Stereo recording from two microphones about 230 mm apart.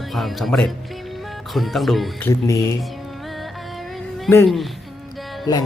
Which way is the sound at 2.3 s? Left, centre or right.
Centre.